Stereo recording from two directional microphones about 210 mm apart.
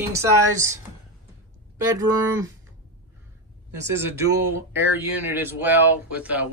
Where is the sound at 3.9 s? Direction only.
10° right (ahead or behind).